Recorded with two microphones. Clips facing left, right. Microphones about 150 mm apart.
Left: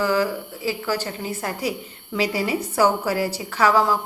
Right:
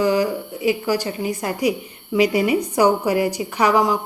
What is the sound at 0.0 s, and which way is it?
A woman's voice, 15° right (ahead or behind).